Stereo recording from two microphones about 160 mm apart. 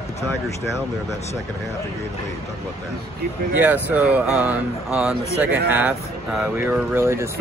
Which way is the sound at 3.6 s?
10° right (ahead or behind).